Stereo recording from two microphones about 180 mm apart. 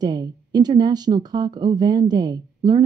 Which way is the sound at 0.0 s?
20° right (ahead or behind).